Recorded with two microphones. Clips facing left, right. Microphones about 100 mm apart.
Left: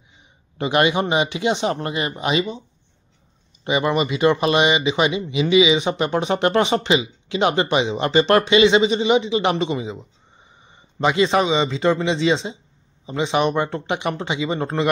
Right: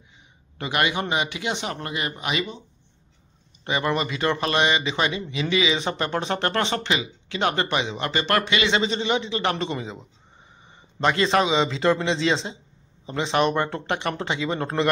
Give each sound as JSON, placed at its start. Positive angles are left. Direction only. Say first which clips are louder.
{"t": 0.6, "sound": "speech", "louder": "left 6 dB", "side_deg": 25}
{"t": 3.6, "sound": "speech", "louder": "left 5 dB", "side_deg": 15}
{"t": 9.7, "sound": "speech", "louder": "left 5 dB", "side_deg": 5}